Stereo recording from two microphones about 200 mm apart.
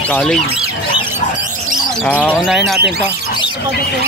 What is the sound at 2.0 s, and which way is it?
Speech, 5° left (ahead or behind).